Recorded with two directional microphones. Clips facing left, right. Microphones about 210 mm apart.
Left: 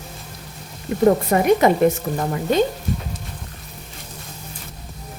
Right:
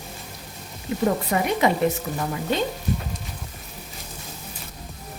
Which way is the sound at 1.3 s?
45° left (ahead or behind).